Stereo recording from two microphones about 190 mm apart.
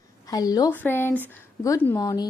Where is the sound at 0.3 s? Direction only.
20° left (ahead or behind).